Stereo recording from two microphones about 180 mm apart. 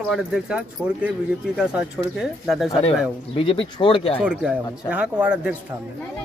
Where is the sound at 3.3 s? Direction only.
30° left (ahead or behind).